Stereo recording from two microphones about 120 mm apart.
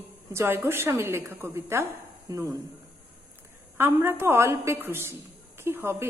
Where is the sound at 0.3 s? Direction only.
20° right (ahead or behind).